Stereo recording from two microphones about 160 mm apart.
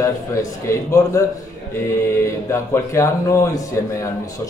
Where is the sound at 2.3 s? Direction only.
15° left (ahead or behind).